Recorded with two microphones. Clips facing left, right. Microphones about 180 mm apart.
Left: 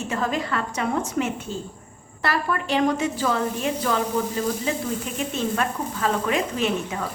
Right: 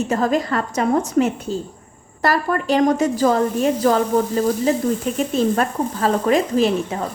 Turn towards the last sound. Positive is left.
turn(degrees=-35)  # may be behind; listen again after turning